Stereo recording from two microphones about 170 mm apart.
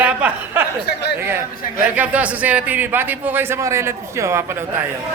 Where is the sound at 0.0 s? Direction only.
10° right (ahead or behind).